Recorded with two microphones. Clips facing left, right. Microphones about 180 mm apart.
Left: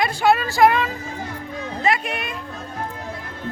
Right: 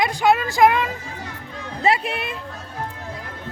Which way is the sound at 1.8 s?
30° right (ahead or behind).